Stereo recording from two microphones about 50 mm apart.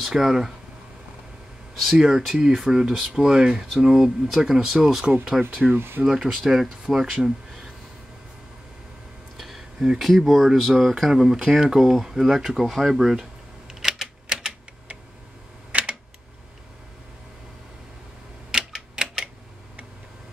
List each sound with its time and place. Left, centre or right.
0.0 s speech: centre
2.0 s speech: centre
5.0 s speech: right
5.8 s speech: right
6.0 s speech: centre
6.3 s speech: centre
9.4 s a sound: centre
9.9 s speech: centre
12.9 s typing: centre
19.0 s a sound: centre